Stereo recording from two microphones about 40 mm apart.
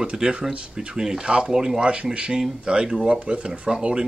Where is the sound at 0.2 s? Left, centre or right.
Right.